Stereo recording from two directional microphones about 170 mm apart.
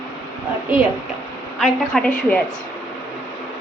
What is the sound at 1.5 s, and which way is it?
Speech, 5° left (ahead or behind).